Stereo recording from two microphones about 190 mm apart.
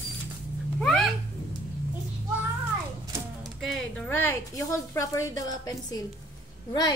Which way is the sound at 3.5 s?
5° left (ahead or behind).